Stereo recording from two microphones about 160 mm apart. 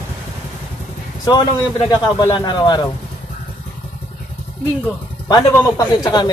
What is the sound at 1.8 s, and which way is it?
A man's voice, 25° left (ahead or behind).